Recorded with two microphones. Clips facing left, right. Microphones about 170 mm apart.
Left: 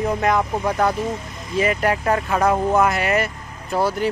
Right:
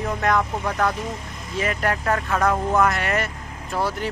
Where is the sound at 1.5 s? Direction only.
5° left (ahead or behind).